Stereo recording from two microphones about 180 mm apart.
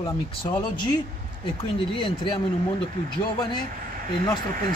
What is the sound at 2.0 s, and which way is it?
Speech, 25° left (ahead or behind).